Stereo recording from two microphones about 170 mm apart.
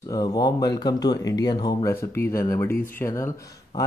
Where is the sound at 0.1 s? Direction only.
25° left (ahead or behind).